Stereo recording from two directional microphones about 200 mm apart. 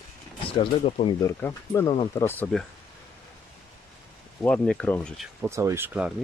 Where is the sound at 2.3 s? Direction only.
10° left (ahead or behind).